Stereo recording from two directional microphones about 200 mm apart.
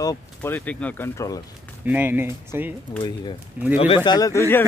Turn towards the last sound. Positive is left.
turn(degrees=10)  # may be behind; listen again after turning